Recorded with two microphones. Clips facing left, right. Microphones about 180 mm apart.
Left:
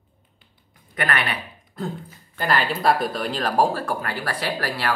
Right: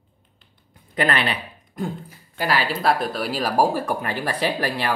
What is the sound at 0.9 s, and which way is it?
Speech, 30° right (ahead or behind).